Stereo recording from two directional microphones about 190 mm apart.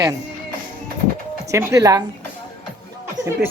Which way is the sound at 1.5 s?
15° right (ahead or behind).